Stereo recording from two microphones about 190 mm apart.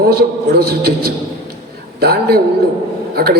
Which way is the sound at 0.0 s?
55° right (ahead or behind).